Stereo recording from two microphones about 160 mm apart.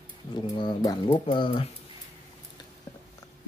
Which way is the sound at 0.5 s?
25° left (ahead or behind).